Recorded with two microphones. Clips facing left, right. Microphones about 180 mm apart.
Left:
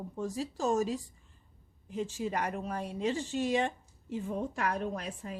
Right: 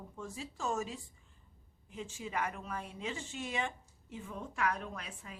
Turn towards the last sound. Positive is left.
turn(degrees=35)  # may be behind; listen again after turning